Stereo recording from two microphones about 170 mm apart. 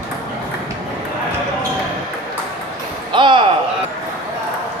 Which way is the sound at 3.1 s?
30° right (ahead or behind).